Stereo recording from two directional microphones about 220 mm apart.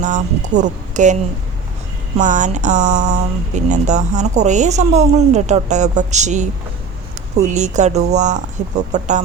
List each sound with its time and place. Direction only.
0.0 s speech: 35° right (ahead or behind)